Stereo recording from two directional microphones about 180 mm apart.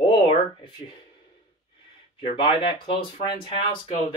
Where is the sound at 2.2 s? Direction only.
30° left (ahead or behind).